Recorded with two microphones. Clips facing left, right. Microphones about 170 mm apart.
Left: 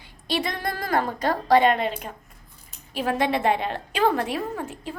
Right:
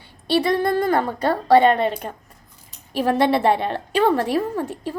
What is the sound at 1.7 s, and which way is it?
A woman's voice, 45° right (ahead or behind).